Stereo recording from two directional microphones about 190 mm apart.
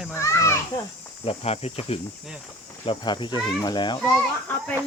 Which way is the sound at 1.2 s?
30° left (ahead or behind).